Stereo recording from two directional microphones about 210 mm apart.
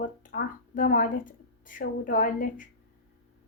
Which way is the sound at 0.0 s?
40° left (ahead or behind).